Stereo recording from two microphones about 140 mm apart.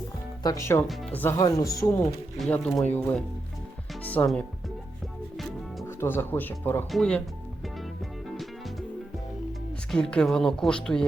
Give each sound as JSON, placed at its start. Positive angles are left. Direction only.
{"t": 0.4, "sound": "speech", "side_deg": 20}
{"t": 2.5, "sound": "speech", "side_deg": 5}
{"t": 6.0, "sound": "speech", "side_deg": 15}
{"t": 9.9, "sound": "speech", "side_deg": 5}